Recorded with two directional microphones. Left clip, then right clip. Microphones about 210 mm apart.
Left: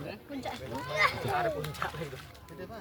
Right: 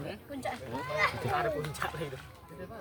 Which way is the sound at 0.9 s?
25° left (ahead or behind).